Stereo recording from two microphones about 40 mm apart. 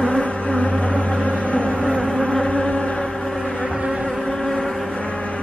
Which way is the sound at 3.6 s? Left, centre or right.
Centre.